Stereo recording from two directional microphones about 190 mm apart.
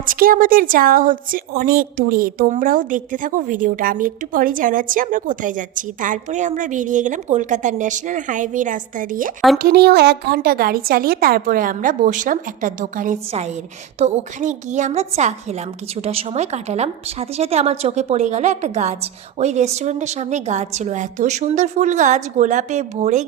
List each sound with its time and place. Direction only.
0.0 s a woman's voice: 50° right (ahead or behind)